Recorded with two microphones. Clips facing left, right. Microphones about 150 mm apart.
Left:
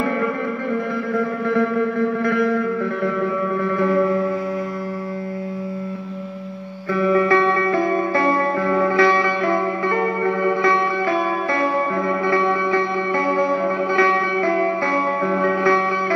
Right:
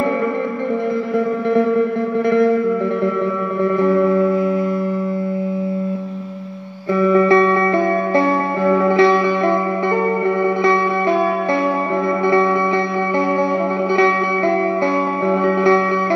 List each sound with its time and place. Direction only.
7.0 s music: 20° right (ahead or behind)
8.6 s music: 20° right (ahead or behind)
15.2 s music: 20° right (ahead or behind)